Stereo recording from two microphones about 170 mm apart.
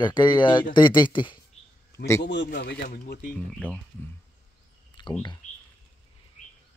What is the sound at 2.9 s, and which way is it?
Speech, 60° left (ahead or behind).